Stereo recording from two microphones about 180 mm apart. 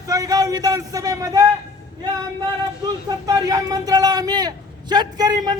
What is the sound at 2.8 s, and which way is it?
Speech, 20° right (ahead or behind).